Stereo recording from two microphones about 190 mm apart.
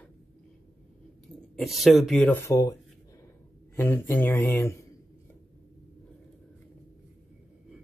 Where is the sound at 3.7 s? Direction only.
10° left (ahead or behind).